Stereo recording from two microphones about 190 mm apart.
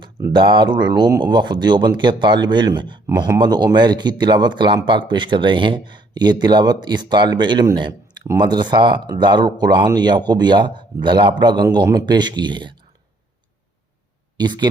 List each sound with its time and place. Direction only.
0.3 s speech: 25° right (ahead or behind)
14.3 s speech: 20° right (ahead or behind)